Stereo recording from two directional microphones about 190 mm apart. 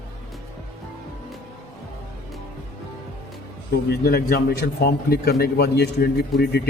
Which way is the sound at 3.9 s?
55° left (ahead or behind).